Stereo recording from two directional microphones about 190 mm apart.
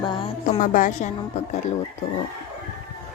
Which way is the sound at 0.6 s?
40° left (ahead or behind).